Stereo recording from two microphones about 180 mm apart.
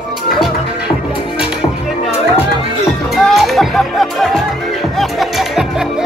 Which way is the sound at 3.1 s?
Centre (ahead or behind).